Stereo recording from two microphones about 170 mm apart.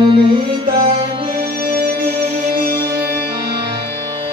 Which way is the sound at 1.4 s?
55° right (ahead or behind).